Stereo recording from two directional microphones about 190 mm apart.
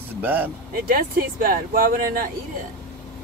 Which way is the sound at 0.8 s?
50° right (ahead or behind).